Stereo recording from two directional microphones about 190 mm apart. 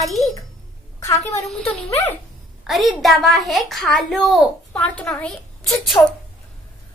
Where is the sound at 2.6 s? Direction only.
Centre (ahead or behind).